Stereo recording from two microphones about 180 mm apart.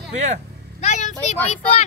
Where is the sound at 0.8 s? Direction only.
40° left (ahead or behind).